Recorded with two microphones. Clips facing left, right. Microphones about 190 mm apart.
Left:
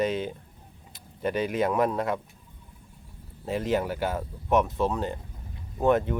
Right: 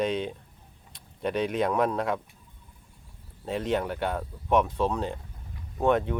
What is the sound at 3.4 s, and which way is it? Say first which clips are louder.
Speech: left 1 dB; 5° left (ahead or behind).